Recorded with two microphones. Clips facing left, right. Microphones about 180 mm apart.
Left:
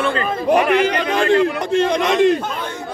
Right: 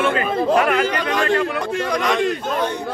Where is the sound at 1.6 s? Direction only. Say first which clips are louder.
Left 4 dB; 25° left (ahead or behind).